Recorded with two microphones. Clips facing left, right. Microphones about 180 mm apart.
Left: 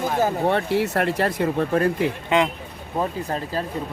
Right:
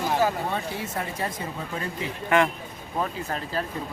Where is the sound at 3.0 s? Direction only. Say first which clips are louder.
Left 4 dB; 30° left (ahead or behind).